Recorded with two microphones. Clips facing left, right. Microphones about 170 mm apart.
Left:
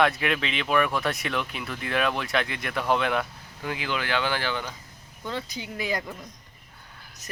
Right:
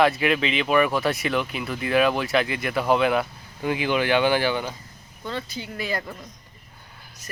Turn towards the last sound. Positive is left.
turn(degrees=15)  # may be behind; listen again after turning